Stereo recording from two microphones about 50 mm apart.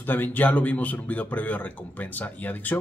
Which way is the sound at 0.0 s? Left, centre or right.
Left.